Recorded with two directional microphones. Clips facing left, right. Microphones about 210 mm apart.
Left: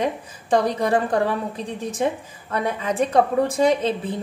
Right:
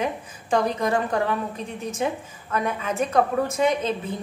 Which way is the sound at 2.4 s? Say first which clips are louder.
Left 2 dB; 35° left (ahead or behind).